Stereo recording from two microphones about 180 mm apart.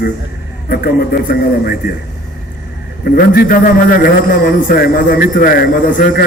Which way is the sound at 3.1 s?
55° left (ahead or behind).